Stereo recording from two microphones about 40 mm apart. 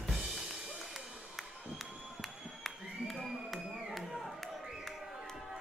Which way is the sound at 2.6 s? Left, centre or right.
Centre.